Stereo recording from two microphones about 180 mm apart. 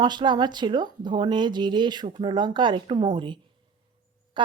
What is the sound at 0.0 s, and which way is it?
A woman's voice, 25° right (ahead or behind).